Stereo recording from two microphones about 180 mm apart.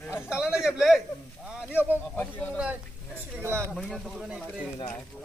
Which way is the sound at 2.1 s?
10° left (ahead or behind).